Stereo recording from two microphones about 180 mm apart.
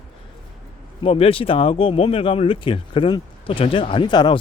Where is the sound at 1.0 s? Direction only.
30° left (ahead or behind).